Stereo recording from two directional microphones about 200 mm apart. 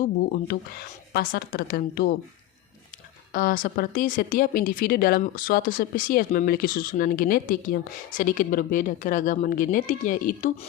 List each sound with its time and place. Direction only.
0.3 s speech: 50° left (ahead or behind)
3.3 s speech: 45° left (ahead or behind)